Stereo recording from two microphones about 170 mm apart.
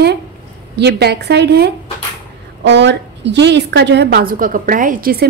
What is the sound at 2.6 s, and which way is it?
A woman's voice, 90° right.